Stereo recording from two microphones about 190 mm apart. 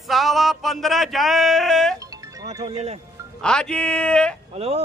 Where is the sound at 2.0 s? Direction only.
20° right (ahead or behind).